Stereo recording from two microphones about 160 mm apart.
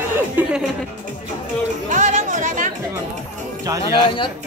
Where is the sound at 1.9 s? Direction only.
50° right (ahead or behind).